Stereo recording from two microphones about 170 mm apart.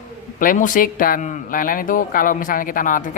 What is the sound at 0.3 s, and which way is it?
A man's voice, 50° left (ahead or behind).